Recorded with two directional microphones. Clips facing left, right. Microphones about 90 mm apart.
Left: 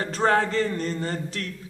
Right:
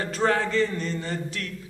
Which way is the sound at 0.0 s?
35° left (ahead or behind).